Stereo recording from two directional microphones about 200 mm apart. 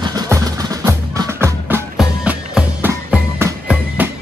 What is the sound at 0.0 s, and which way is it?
Music, 20° right (ahead or behind).